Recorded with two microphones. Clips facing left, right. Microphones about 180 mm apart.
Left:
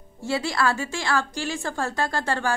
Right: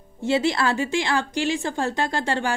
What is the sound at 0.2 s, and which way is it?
A woman's voice, 20° right (ahead or behind).